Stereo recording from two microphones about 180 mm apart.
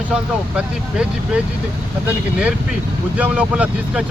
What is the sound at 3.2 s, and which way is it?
Speech, 5° right (ahead or behind).